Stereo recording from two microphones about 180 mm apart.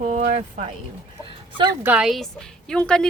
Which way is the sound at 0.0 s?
45° right (ahead or behind).